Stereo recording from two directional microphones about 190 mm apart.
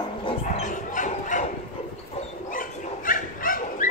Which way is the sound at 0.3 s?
40° left (ahead or behind).